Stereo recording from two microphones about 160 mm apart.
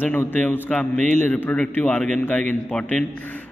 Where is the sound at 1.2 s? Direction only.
10° left (ahead or behind).